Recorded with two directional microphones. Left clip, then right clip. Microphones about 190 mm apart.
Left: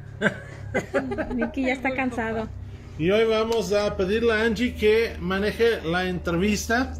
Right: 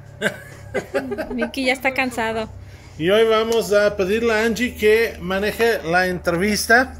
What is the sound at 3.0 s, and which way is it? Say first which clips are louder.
Speech: right 5 dB; 45° right (ahead or behind).